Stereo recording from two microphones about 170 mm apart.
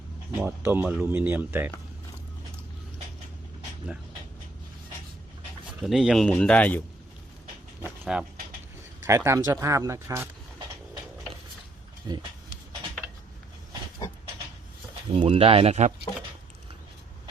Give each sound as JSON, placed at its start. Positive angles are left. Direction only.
{"t": 0.3, "sound": "speech", "side_deg": -15}
{"t": 5.8, "sound": "speech", "side_deg": 0}
{"t": 8.1, "sound": "speech", "side_deg": -5}
{"t": 9.0, "sound": "speech", "side_deg": -15}
{"t": 12.1, "sound": "speech", "side_deg": -20}
{"t": 15.1, "sound": "speech", "side_deg": -35}